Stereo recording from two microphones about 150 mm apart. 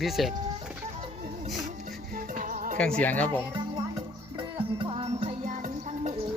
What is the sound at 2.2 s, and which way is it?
Music, 65° right (ahead or behind).